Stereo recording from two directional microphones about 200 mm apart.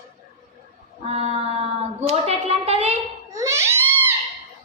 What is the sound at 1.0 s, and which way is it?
Speech, 30° right (ahead or behind).